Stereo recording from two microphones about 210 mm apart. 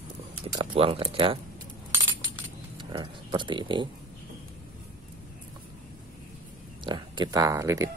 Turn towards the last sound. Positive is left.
turn(degrees=-15)  # may be behind; listen again after turning